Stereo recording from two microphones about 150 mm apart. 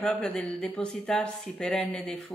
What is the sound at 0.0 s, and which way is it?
A woman's voice, 5° left (ahead or behind).